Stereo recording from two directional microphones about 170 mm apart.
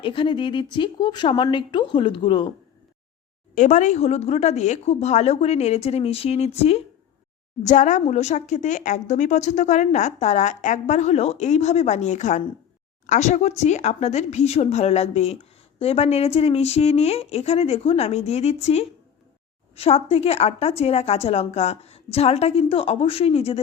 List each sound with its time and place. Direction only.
0.0 s speech: 30° left (ahead or behind)
3.5 s a woman's voice: 45° left (ahead or behind)